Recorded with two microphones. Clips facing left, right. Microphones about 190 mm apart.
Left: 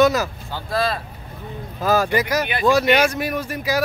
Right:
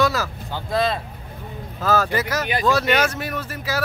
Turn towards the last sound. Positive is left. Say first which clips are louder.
# left 4 dB
turn(degrees=15)  # may be behind; listen again after turning